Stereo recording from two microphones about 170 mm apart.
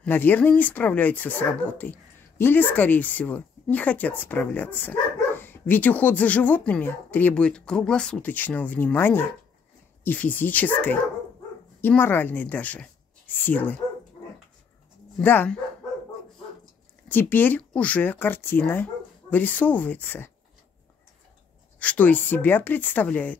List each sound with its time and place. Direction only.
0.0 s speech: 10° left (ahead or behind)
15.1 s speech: 10° left (ahead or behind)
17.1 s speech: 10° left (ahead or behind)
21.7 s speech: 10° left (ahead or behind)